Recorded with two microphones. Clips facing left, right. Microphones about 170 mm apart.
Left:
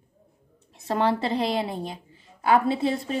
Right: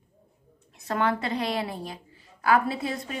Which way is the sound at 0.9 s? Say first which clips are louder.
Left 3 dB; 30° left (ahead or behind).